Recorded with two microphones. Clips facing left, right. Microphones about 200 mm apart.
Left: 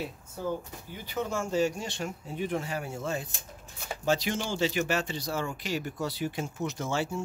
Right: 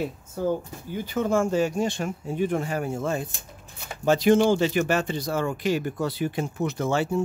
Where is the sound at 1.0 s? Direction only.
50° right (ahead or behind).